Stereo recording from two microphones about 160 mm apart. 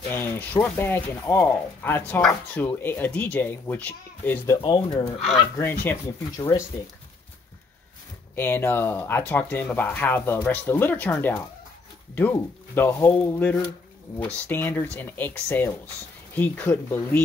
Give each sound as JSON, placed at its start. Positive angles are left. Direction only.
{"t": 0.1, "sound": "speech", "side_deg": 10}
{"t": 4.6, "sound": "speech", "side_deg": 30}
{"t": 8.4, "sound": "speech", "side_deg": 15}